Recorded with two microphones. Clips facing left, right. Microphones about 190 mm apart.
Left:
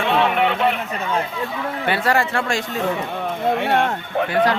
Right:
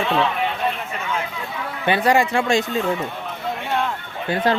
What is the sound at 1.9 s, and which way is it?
Speech, 15° right (ahead or behind).